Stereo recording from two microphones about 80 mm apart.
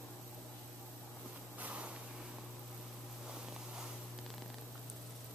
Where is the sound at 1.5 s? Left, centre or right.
Centre.